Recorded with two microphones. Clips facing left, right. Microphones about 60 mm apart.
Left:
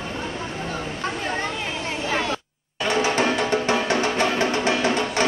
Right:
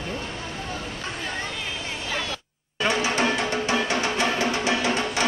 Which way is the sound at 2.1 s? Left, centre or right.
Left.